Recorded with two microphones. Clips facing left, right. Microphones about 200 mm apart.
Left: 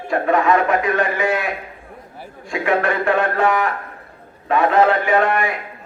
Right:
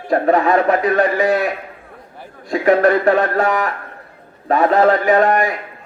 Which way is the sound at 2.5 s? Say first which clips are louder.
Right 6 dB; 40° right (ahead or behind).